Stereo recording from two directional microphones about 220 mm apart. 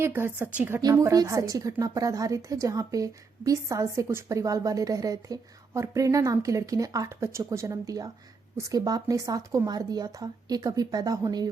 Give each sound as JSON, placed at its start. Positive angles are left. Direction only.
{"t": 0.0, "sound": "a woman's voice", "side_deg": -10}